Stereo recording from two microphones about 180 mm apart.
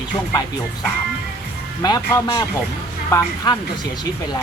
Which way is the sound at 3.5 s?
20° left (ahead or behind).